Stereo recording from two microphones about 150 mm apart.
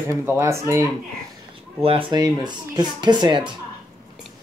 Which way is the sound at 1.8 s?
35° right (ahead or behind).